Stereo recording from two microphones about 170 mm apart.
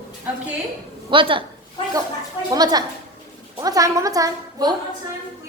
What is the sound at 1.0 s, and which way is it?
Speech, 30° right (ahead or behind).